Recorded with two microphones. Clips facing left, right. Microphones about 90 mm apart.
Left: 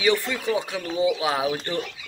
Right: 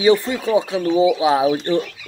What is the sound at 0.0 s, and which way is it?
Speech, 30° right (ahead or behind).